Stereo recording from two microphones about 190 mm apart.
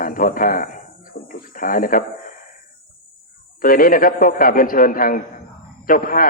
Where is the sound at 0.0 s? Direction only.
45° left (ahead or behind).